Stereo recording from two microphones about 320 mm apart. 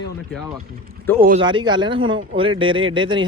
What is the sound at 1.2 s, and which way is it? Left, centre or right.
Speech, centre.